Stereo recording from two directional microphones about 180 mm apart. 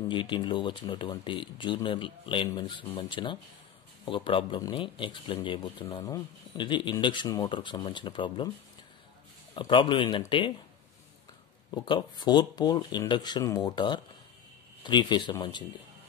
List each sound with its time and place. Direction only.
0.1 s speech: 25° left (ahead or behind)
9.5 s speech: 25° left (ahead or behind)
11.7 s speech: 25° left (ahead or behind)